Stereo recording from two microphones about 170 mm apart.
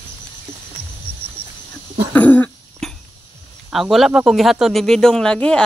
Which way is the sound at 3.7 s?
Centre (ahead or behind).